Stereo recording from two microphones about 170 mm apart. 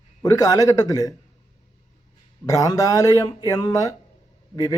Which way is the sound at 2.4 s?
20° left (ahead or behind).